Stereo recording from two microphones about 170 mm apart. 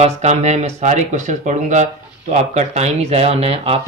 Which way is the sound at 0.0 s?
40° right (ahead or behind).